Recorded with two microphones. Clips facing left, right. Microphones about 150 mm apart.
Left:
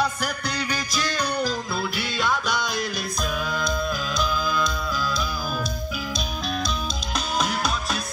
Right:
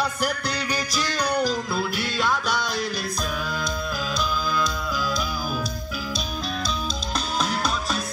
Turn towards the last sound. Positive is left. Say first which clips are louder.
# even
turn(degrees=5)  # may be behind; listen again after turning